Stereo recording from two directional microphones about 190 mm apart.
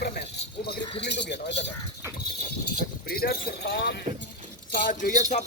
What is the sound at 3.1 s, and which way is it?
Speech, 55° left (ahead or behind).